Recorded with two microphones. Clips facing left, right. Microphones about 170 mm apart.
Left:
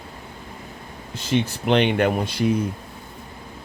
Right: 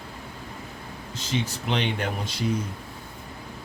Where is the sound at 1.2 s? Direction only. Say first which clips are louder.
Left 6 dB; 60° left (ahead or behind).